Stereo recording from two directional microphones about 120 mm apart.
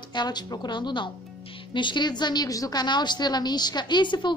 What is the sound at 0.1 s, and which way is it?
A woman's voice, 35° left (ahead or behind).